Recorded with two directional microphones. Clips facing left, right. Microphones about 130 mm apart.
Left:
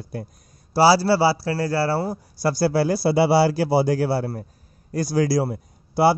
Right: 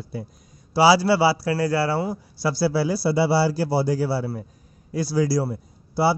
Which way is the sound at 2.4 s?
45° left (ahead or behind).